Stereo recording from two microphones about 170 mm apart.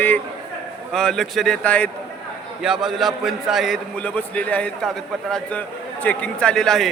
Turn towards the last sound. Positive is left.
turn(degrees=5)  # may be behind; listen again after turning